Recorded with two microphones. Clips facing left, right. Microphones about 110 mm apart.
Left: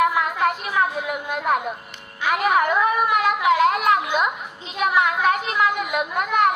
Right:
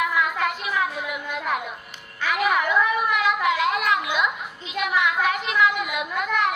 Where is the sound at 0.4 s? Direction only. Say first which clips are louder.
Left 4 dB; 45° left (ahead or behind).